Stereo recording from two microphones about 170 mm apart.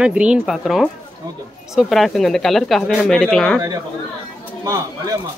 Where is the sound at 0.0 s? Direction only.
5° right (ahead or behind).